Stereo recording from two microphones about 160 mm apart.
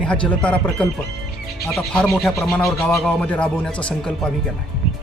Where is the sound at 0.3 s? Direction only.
5° left (ahead or behind).